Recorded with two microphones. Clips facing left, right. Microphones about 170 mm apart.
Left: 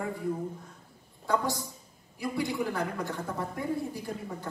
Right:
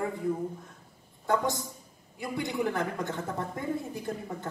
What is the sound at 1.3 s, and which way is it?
Speech, 20° right (ahead or behind).